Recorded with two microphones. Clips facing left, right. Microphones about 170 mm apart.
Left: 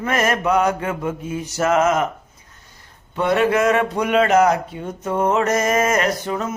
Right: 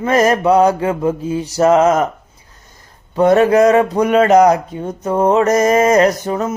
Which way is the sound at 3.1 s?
40° right (ahead or behind).